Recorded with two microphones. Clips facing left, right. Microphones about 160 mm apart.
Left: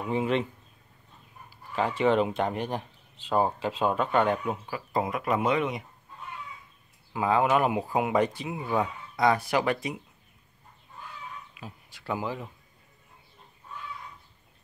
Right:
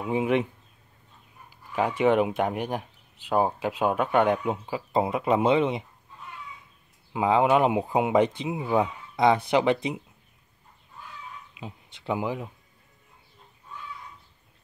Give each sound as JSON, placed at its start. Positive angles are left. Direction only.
{"t": 0.0, "sound": "speech", "side_deg": -10}
{"t": 1.8, "sound": "speech", "side_deg": -15}
{"t": 7.1, "sound": "speech", "side_deg": -20}
{"t": 11.6, "sound": "speech", "side_deg": -20}